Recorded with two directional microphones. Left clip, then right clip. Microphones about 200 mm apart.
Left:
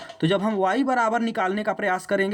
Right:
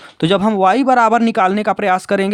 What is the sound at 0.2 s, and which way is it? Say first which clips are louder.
Speech: right 9 dB; 65° right (ahead or behind).